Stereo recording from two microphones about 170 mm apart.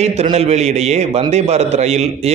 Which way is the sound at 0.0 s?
40° right (ahead or behind).